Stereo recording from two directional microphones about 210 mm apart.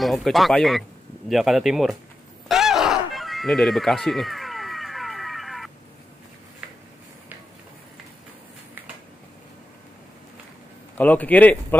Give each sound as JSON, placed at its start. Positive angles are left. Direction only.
{"t": 0.0, "sound": "speech", "side_deg": 0}
{"t": 2.4, "sound": "a sound", "side_deg": 0}
{"t": 11.0, "sound": "speech", "side_deg": 5}